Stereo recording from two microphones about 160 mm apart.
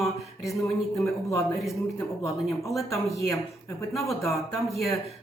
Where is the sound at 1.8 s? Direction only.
20° left (ahead or behind).